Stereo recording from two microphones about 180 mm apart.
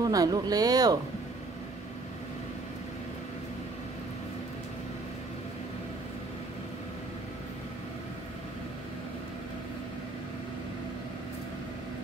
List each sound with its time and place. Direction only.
0.0 s speech: 20° right (ahead or behind)